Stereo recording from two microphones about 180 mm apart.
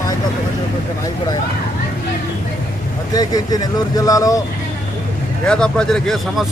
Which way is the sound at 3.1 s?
20° left (ahead or behind).